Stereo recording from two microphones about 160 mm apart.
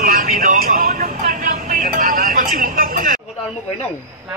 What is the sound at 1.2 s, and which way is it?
Vehicle, 55° right (ahead or behind).